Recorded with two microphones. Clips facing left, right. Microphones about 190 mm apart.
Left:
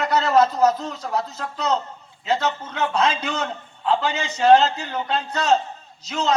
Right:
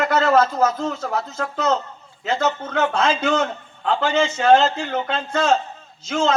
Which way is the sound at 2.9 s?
35° left (ahead or behind).